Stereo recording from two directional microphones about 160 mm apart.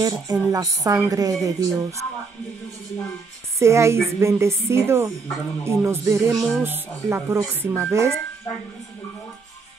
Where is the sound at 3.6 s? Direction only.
20° right (ahead or behind).